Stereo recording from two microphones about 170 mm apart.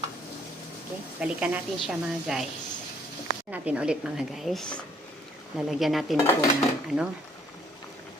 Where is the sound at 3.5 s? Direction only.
10° right (ahead or behind).